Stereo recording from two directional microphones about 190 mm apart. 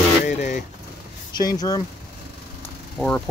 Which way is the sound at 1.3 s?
20° left (ahead or behind).